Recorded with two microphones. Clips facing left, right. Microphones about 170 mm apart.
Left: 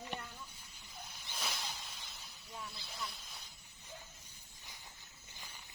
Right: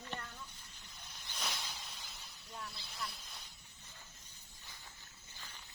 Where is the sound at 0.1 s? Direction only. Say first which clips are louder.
Even; 15° left (ahead or behind).